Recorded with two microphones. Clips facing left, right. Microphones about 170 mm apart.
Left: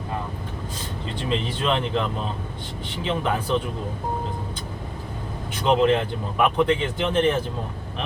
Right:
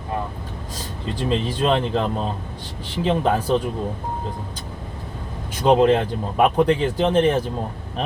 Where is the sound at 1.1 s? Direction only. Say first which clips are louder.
Right 4 dB; 40° right (ahead or behind).